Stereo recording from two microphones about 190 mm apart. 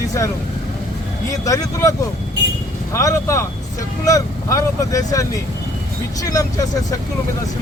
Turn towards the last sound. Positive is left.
turn(degrees=15)  # may be behind; listen again after turning